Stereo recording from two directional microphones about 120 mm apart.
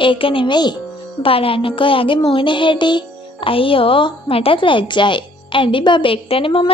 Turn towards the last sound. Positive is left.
turn(degrees=45)  # may be behind; listen again after turning